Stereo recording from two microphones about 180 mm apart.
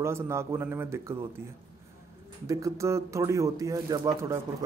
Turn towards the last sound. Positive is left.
turn(degrees=-15)  # may be behind; listen again after turning